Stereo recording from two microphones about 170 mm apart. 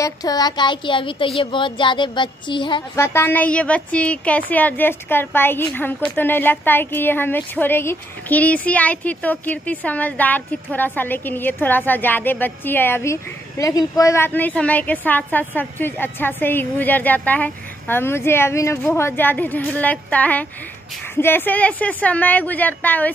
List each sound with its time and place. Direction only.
0.0 s speech: 20° left (ahead or behind)
3.0 s a woman's voice: 15° left (ahead or behind)